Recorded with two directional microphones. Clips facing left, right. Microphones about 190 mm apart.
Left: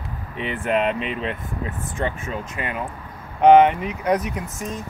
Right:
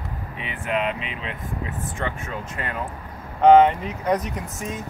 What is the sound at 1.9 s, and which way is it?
Speech, 20° left (ahead or behind).